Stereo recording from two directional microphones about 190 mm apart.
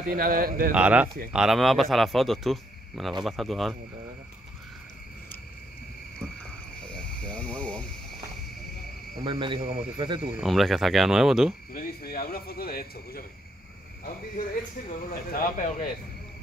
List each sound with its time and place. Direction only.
0.1 s a man's voice: 50° right (ahead or behind)
0.7 s speech: 5° right (ahead or behind)
6.9 s a sound: 5° left (ahead or behind)
9.2 s a man's voice: 25° right (ahead or behind)
10.4 s speech: centre (ahead or behind)
11.7 s speech: 50° left (ahead or behind)
15.0 s speech: 50° left (ahead or behind)